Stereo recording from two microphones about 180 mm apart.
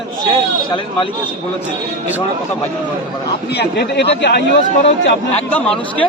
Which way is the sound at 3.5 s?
65° left (ahead or behind).